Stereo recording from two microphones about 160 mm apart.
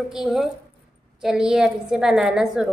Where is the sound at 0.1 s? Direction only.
Centre (ahead or behind).